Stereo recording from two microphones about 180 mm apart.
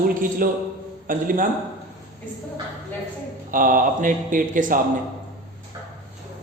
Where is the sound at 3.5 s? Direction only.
50° right (ahead or behind).